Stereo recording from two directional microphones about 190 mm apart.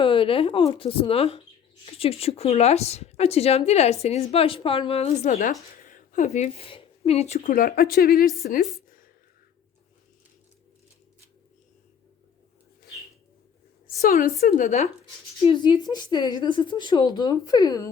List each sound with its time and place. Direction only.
0.0 s a woman's voice: 25° left (ahead or behind); by 8.3 s 50° left (ahead or behind)
14.0 s a woman's voice: 45° left (ahead or behind)
15.4 s speech: 20° left (ahead or behind)